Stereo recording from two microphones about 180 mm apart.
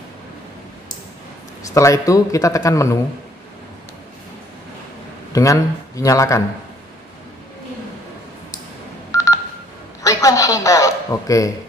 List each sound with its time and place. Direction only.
1.7 s speech: 15° left (ahead or behind)
5.3 s speech: 20° left (ahead or behind)
9.1 s telephone dialing: 15° left (ahead or behind)
10.0 s a sound: 20° left (ahead or behind)